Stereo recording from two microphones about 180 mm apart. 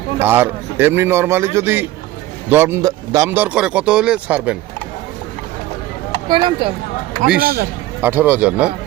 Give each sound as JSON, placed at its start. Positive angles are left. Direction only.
{"t": 0.2, "sound": "speech", "side_deg": -10}
{"t": 6.2, "sound": "speech", "side_deg": -25}
{"t": 7.3, "sound": "speech", "side_deg": -55}
{"t": 8.0, "sound": "speech", "side_deg": -10}